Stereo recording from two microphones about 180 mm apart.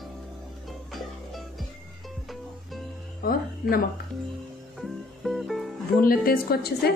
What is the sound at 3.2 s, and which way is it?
Speech, 55° left (ahead or behind).